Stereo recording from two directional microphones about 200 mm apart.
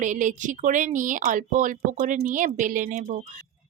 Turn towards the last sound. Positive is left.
turn(degrees=-40)  # may be behind; listen again after turning